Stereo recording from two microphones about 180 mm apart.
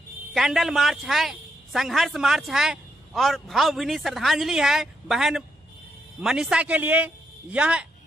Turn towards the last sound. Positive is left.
turn(degrees=-5)  # may be behind; listen again after turning